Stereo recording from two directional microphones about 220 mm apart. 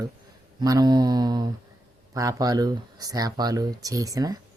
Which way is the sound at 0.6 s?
15° right (ahead or behind).